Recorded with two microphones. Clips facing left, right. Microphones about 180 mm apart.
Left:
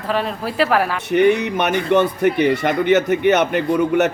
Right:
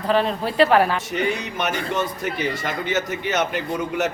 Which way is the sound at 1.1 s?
60° left (ahead or behind).